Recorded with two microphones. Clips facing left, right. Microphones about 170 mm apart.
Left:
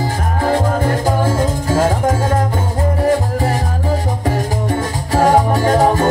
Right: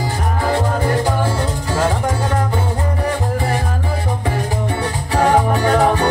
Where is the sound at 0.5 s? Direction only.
45° left (ahead or behind).